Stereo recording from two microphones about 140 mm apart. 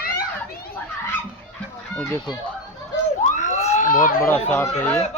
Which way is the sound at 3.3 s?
55° left (ahead or behind).